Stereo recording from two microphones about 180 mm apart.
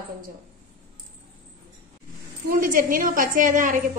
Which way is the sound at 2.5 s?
50° right (ahead or behind).